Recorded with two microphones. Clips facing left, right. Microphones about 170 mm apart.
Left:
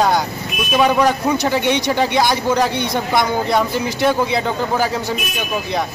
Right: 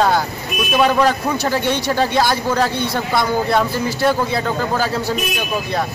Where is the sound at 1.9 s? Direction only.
15° left (ahead or behind).